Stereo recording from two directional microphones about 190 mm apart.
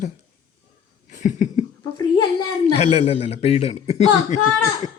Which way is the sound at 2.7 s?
35° left (ahead or behind).